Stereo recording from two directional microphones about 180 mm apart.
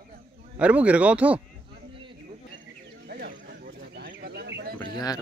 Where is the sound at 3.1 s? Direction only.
70° right (ahead or behind).